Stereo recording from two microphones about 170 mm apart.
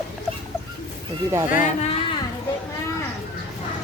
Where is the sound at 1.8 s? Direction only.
35° left (ahead or behind).